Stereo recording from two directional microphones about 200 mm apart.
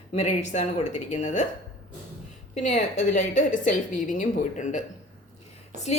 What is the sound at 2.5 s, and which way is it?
A woman's voice, 35° left (ahead or behind).